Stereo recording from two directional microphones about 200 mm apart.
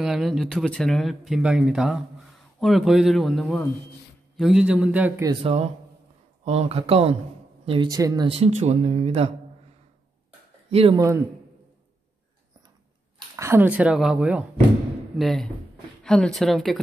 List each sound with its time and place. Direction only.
0.0 s speech: centre (ahead or behind)
5.3 s speech: 30° right (ahead or behind)
10.7 s speech: 30° right (ahead or behind)
11.0 s speech: 15° right (ahead or behind)
13.4 s speech: 10° right (ahead or behind)